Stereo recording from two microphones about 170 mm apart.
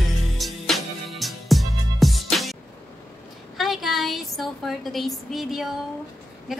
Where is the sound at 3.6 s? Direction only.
Centre (ahead or behind).